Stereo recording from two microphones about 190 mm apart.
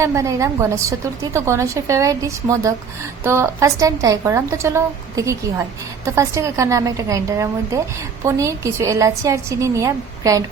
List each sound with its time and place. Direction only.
0.0 s a woman's voice: 15° right (ahead or behind)